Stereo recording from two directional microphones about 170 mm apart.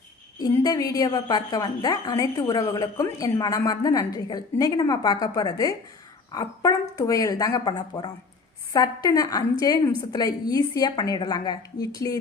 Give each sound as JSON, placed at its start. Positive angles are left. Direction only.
{"t": 0.3, "sound": "a woman's voice", "side_deg": 20}